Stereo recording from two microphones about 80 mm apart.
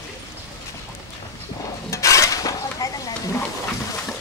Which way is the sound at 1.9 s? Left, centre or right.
Left.